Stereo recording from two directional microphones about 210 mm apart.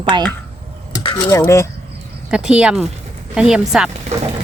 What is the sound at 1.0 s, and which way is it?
Cutlery, 20° left (ahead or behind).